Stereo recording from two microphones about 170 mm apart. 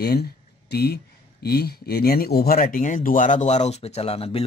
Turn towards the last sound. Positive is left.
turn(degrees=35)  # may be behind; listen again after turning